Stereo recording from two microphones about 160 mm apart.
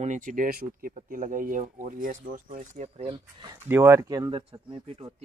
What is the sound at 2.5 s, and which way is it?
Speech, 40° right (ahead or behind).